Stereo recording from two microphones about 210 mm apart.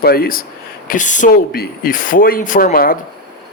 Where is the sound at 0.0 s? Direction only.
45° left (ahead or behind).